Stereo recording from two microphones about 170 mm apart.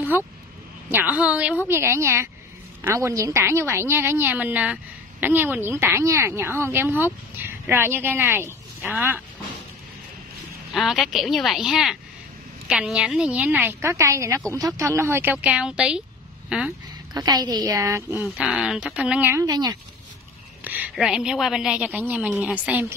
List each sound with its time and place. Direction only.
0.1 s a woman's voice: 15° right (ahead or behind)
10.7 s a woman's voice: centre (ahead or behind)
17.1 s a woman's voice: 25° right (ahead or behind)
20.6 s a woman's voice: 10° right (ahead or behind)